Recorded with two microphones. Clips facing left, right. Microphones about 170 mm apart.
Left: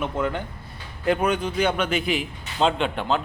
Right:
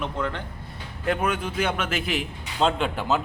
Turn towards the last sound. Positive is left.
turn(degrees=-5)  # may be behind; listen again after turning